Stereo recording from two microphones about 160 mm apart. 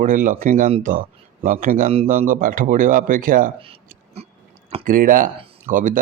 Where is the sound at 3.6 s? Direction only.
40° right (ahead or behind).